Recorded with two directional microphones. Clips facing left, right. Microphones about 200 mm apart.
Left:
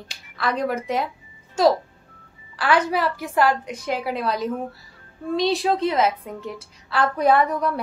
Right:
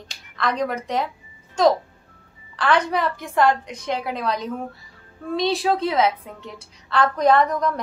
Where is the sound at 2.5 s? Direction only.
5° left (ahead or behind).